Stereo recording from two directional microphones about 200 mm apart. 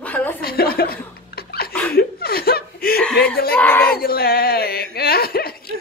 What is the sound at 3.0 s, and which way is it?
Speech, 5° left (ahead or behind).